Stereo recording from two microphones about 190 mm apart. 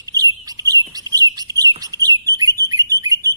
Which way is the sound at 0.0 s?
20° right (ahead or behind).